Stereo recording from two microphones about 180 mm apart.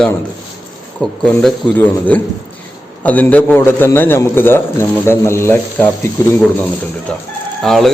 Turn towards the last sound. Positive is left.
turn(degrees=0)  # may be behind; listen again after turning